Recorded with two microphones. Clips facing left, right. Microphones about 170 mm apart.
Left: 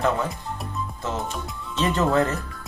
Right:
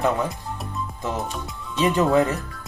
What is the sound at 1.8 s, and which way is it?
Speech, 15° right (ahead or behind).